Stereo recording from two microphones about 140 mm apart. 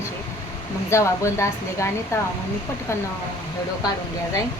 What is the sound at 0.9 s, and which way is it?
A woman's voice, 20° left (ahead or behind).